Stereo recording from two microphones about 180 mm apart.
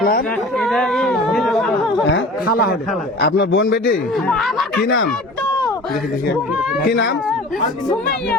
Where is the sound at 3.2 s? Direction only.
70° left (ahead or behind).